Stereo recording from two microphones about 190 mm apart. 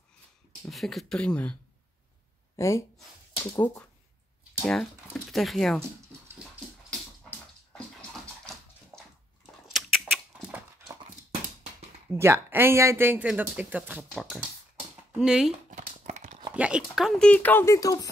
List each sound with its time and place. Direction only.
0.7 s speech: centre (ahead or behind)
6.9 s bathtub: 5° left (ahead or behind)
9.7 s a sound: centre (ahead or behind)
12.1 s speech: 10° right (ahead or behind)
15.1 s speech: 5° right (ahead or behind)
15.7 s a sound: 40° right (ahead or behind)
16.5 s speech: 5° right (ahead or behind); by 18.1 s 20° left (ahead or behind)